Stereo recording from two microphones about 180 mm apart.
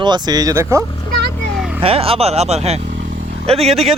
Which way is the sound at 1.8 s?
30° right (ahead or behind).